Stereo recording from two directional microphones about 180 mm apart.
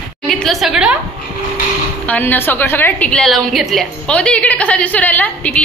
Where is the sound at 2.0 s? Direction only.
10° left (ahead or behind).